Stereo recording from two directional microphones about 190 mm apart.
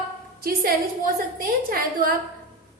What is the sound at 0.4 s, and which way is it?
A woman's voice, 50° right (ahead or behind).